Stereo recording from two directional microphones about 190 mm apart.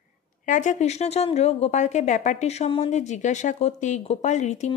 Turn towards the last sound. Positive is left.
turn(degrees=35)  # may be behind; listen again after turning